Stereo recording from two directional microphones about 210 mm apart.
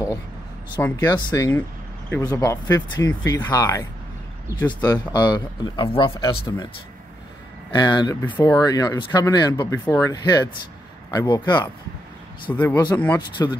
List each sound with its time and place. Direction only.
0.7 s speech: 15° left (ahead or behind)
7.7 s speech: 20° left (ahead or behind)
12.7 s speech: 20° left (ahead or behind)